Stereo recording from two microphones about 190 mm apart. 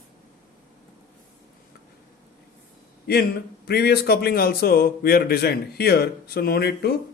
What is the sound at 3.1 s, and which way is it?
A man's voice, 55° left (ahead or behind).